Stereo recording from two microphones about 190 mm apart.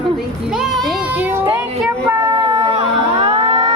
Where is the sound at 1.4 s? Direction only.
10° right (ahead or behind).